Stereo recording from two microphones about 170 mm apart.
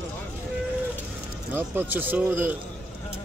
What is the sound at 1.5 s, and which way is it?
Speech, 10° right (ahead or behind).